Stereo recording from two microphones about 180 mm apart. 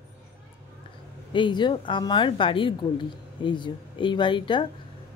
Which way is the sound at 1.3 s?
25° left (ahead or behind).